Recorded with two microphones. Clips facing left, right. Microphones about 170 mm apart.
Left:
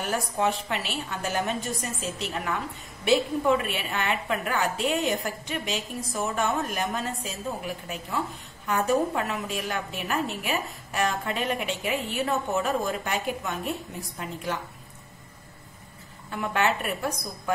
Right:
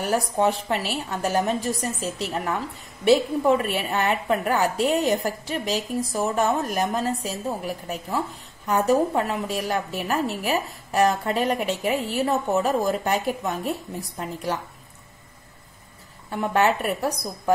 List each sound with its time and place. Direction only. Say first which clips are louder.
0.0 s a woman's voice: right 5 dB; 35° right (ahead or behind)
16.3 s a woman's voice: right 5 dB; 35° right (ahead or behind)